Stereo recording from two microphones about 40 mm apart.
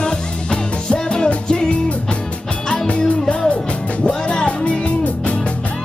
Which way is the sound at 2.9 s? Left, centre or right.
Left.